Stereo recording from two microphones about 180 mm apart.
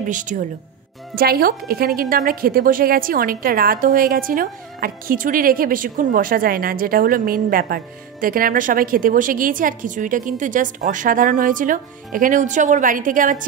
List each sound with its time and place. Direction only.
0.1 s a woman's voice: 45° right (ahead or behind)
1.1 s a child's voice: 55° right (ahead or behind)